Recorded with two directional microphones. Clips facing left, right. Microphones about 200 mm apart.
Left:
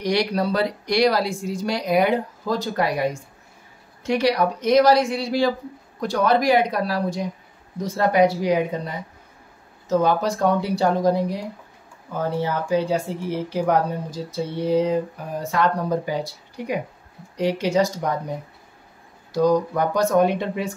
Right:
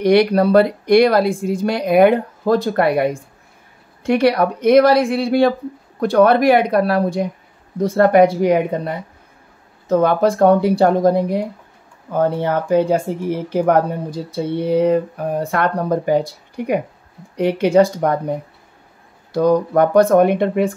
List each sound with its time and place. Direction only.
0.0 s speech: 55° right (ahead or behind)
19.3 s speech: 60° right (ahead or behind)